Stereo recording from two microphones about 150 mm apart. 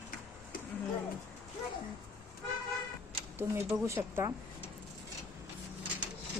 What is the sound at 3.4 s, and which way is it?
Speech, 20° right (ahead or behind).